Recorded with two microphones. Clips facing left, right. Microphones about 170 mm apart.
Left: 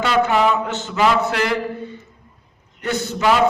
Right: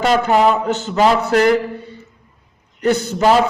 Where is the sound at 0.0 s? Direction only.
40° right (ahead or behind).